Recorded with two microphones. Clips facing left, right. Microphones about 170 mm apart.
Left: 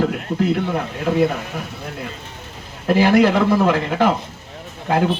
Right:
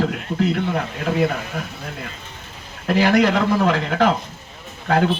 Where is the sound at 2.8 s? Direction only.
5° left (ahead or behind).